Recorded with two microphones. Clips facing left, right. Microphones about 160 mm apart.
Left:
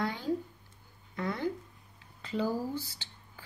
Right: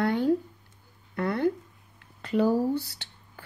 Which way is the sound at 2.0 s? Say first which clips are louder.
Right 8 dB; 60° right (ahead or behind).